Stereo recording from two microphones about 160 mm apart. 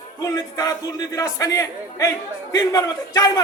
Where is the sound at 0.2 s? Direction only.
25° left (ahead or behind).